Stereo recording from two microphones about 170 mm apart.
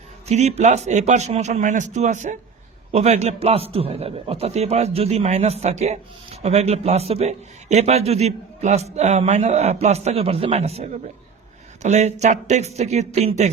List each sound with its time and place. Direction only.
0.3 s a man's voice: 40° right (ahead or behind)